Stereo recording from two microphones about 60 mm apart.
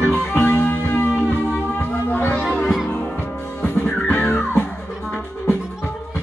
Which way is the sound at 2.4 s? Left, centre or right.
Centre.